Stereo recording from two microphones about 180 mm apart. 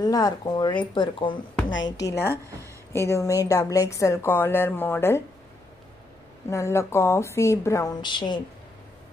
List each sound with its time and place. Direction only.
0.0 s a woman's voice: 20° left (ahead or behind)
6.5 s a woman's voice: 15° left (ahead or behind)